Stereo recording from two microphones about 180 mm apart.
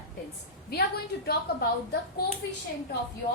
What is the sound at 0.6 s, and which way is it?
Speech, 60° left (ahead or behind).